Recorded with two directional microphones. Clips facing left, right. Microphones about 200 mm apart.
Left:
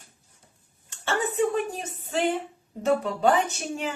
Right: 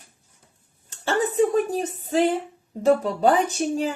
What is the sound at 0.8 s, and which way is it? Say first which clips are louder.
Speech: right 4 dB; 35° right (ahead or behind).